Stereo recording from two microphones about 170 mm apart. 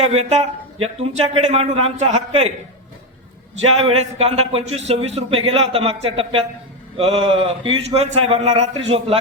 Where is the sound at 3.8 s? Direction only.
35° right (ahead or behind).